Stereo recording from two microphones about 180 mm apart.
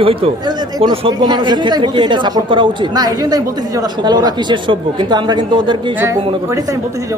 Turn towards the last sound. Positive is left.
turn(degrees=-20)  # may be behind; listen again after turning